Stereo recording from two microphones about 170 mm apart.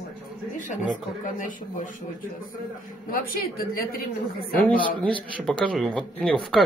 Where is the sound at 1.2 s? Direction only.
50° left (ahead or behind).